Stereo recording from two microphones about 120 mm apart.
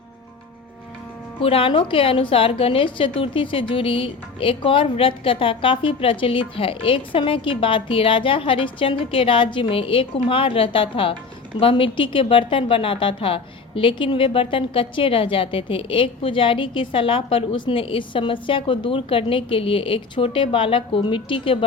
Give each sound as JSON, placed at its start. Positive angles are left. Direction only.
{"t": 1.4, "sound": "a woman's voice", "side_deg": 50}